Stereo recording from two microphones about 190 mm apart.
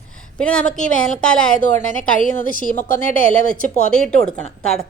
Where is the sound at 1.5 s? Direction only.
45° left (ahead or behind).